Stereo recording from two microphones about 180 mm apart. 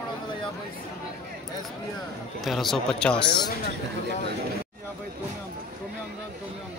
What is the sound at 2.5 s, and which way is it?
Speech, centre (ahead or behind).